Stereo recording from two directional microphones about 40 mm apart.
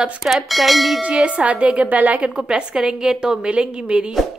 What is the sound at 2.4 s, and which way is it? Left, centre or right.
Speech, right.